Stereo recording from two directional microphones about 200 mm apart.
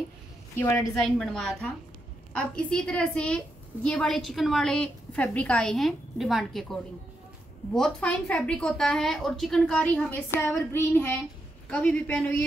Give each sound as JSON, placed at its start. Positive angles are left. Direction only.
{"t": 1.0, "sound": "a woman's voice", "side_deg": 0}